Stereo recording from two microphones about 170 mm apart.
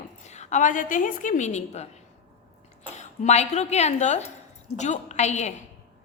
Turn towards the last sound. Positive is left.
turn(degrees=40)  # may be behind; listen again after turning